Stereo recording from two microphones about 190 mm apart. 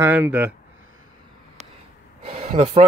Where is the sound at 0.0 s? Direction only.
10° right (ahead or behind).